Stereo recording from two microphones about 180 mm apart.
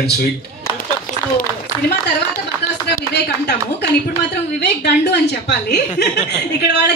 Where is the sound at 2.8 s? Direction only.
65° left (ahead or behind).